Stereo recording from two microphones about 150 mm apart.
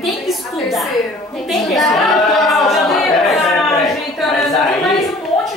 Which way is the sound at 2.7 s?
Centre (ahead or behind).